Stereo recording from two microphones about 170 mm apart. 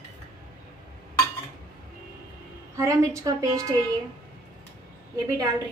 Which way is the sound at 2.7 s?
20° right (ahead or behind).